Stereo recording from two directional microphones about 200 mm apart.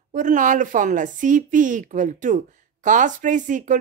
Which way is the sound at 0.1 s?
40° right (ahead or behind).